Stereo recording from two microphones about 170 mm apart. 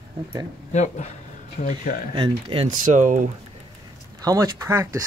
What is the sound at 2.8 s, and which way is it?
Speech, 50° right (ahead or behind).